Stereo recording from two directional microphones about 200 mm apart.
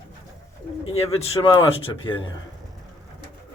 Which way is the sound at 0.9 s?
30° left (ahead or behind).